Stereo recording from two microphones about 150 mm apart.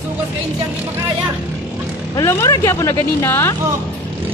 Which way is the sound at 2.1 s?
20° left (ahead or behind).